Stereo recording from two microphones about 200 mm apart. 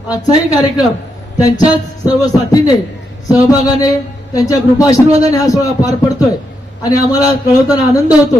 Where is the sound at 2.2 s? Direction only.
20° left (ahead or behind).